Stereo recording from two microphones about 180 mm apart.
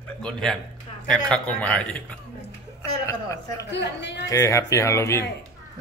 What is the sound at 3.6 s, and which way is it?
Speech, 75° left (ahead or behind).